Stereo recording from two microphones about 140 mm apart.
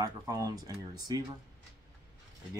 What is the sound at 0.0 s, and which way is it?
Speech, 25° right (ahead or behind).